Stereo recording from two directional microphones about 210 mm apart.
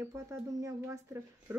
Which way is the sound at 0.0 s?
15° right (ahead or behind).